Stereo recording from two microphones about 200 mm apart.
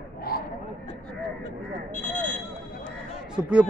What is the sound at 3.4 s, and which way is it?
Speech, 5° right (ahead or behind).